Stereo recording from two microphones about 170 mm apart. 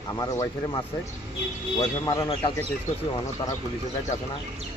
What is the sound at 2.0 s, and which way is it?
Speech, 20° left (ahead or behind).